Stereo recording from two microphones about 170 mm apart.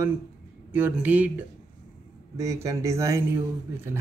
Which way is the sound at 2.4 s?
20° right (ahead or behind).